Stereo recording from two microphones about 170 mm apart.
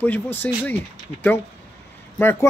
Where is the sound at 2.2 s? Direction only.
15° left (ahead or behind).